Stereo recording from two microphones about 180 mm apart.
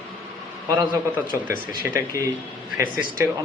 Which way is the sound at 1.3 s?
10° right (ahead or behind).